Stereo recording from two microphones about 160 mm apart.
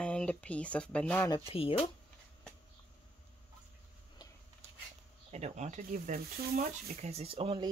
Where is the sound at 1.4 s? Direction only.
35° left (ahead or behind).